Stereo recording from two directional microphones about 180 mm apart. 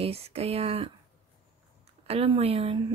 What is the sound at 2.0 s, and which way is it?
Speech, 35° right (ahead or behind).